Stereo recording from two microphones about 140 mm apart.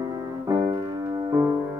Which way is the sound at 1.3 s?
20° right (ahead or behind).